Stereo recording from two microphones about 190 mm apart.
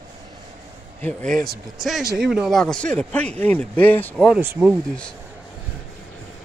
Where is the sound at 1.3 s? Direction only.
Centre (ahead or behind).